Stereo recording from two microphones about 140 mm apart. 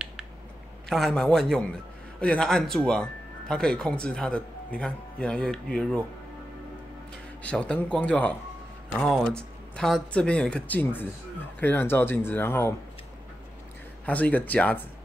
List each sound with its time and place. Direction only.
0.8 s speech: centre (ahead or behind)
7.4 s speech: 10° left (ahead or behind)
14.0 s speech: 10° left (ahead or behind)